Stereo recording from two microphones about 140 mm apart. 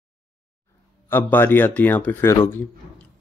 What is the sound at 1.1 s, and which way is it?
A man's voice, 15° left (ahead or behind).